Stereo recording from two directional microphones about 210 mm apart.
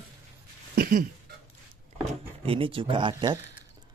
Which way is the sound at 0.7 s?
40° right (ahead or behind).